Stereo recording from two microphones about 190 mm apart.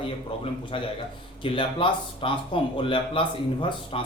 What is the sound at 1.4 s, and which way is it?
A man's voice, 25° left (ahead or behind).